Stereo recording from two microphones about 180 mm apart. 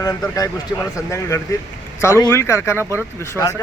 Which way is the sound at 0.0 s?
20° left (ahead or behind).